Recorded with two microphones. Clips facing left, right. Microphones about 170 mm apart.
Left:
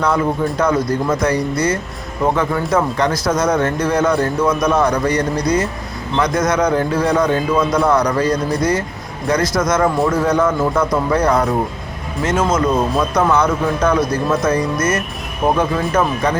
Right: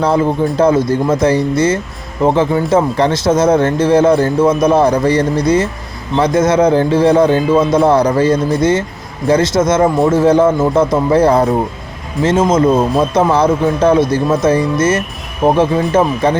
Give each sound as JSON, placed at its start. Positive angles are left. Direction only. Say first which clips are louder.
{"t": 0.0, "sound": "speech", "louder": "right 4 dB", "side_deg": -30}